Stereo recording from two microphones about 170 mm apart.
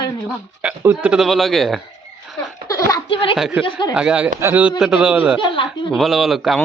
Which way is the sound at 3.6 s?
30° left (ahead or behind).